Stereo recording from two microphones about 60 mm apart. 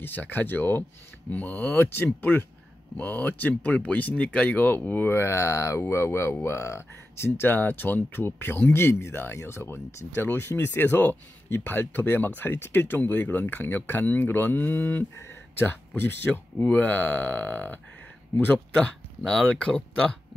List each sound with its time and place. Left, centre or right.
0.0 s speech: left
3.0 s speech: left
16.6 s speech: left
19.6 s speech: centre